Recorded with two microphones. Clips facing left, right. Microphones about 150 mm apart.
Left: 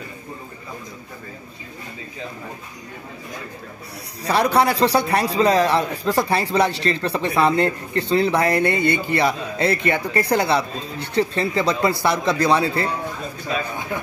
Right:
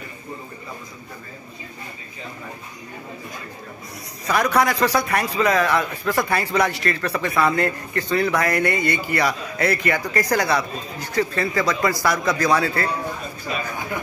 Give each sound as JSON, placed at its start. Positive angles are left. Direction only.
{"t": 4.3, "sound": "a man's voice", "side_deg": 30}